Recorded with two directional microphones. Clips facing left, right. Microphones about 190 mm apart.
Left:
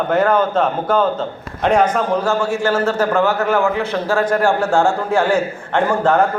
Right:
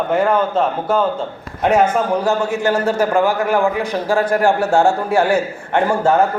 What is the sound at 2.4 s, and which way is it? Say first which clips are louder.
A man's voice: even; 20° right (ahead or behind).